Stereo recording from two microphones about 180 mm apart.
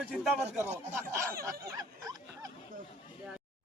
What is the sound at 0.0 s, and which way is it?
Speech, 10° right (ahead or behind).